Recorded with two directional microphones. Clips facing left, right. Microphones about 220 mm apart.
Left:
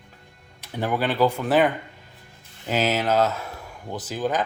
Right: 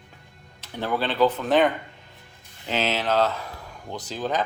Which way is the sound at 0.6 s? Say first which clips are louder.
Left 2 dB; 15° left (ahead or behind).